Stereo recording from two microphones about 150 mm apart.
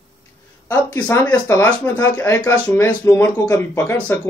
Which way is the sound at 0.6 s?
15° left (ahead or behind).